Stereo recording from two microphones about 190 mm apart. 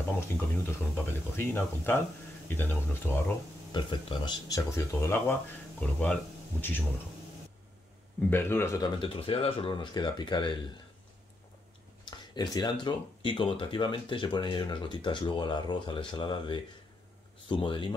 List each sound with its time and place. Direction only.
0.4 s speech: 10° left (ahead or behind)
3.7 s speech: 25° left (ahead or behind); by 6.1 s 5° left (ahead or behind)
8.3 s speech: 10° left (ahead or behind)
9.0 s speech: 30° left (ahead or behind)
12.1 s speech: 20° left (ahead or behind)